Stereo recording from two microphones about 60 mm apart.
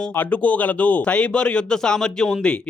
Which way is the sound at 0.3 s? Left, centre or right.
Left.